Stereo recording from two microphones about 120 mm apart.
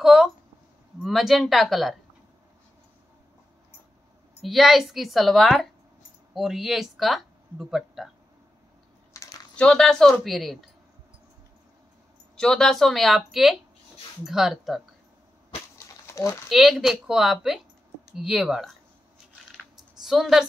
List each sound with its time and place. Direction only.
0.0 s a sound: 5° right (ahead or behind)
1.0 s a woman's voice: centre (ahead or behind)
4.4 s a woman's voice: centre (ahead or behind)
9.1 s a sound: 25° left (ahead or behind)
9.6 s a woman's voice: 5° left (ahead or behind)
12.4 s a woman's voice: 5° left (ahead or behind)
16.1 s speech: 25° left (ahead or behind)
16.4 s a woman's voice: centre (ahead or behind)
19.5 s typing: centre (ahead or behind)